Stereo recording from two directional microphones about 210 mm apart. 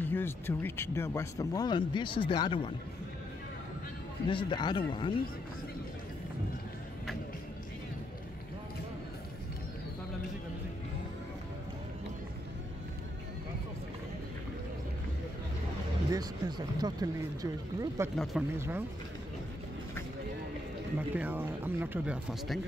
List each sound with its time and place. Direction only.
0.0 s speech: 10° left (ahead or behind)
4.3 s speech: 20° left (ahead or behind)
16.1 s speech: 20° right (ahead or behind)
18.1 s speech: centre (ahead or behind)
18.5 s speech: 10° right (ahead or behind)
21.1 s speech: 10° right (ahead or behind)